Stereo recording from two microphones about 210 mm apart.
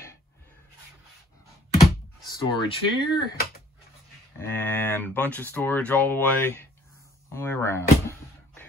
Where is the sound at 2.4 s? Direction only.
25° left (ahead or behind).